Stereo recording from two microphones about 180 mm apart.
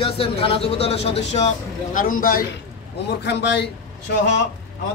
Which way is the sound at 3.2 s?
70° left (ahead or behind).